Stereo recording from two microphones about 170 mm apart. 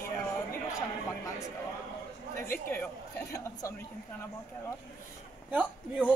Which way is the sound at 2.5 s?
10° left (ahead or behind).